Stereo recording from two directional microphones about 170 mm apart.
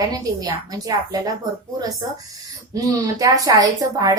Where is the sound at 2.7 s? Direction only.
20° right (ahead or behind).